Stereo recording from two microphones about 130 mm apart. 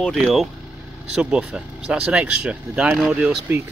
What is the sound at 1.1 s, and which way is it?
Speech, 10° right (ahead or behind).